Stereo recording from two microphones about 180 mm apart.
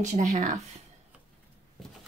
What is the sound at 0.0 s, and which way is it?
Speech, 40° right (ahead or behind).